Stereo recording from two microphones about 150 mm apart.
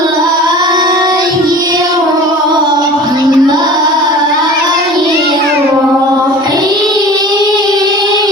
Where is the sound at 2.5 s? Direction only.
30° right (ahead or behind).